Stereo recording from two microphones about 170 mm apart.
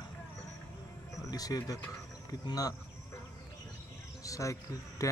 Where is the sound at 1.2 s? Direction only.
20° left (ahead or behind).